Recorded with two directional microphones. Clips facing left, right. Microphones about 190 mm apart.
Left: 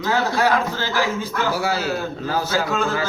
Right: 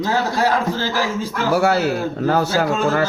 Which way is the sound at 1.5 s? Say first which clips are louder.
Right 6 dB; 60° right (ahead or behind).